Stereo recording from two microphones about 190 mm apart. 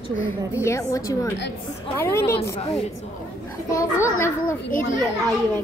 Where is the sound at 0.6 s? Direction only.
15° left (ahead or behind).